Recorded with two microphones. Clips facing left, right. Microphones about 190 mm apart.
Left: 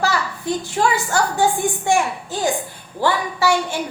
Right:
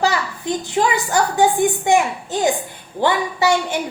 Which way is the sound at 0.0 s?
20° right (ahead or behind).